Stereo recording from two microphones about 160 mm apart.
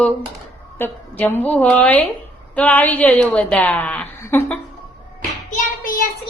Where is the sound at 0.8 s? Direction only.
10° left (ahead or behind).